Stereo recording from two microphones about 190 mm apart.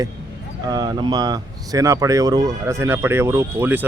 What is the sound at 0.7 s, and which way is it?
Speech, 20° right (ahead or behind).